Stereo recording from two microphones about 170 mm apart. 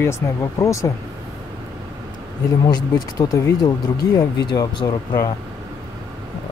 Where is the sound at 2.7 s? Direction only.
25° left (ahead or behind).